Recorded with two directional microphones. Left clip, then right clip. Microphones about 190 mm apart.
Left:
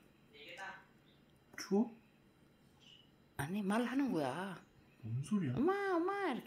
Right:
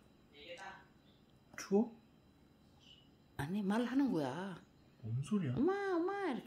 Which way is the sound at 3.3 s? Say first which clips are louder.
Left 1 dB; 15° right (ahead or behind).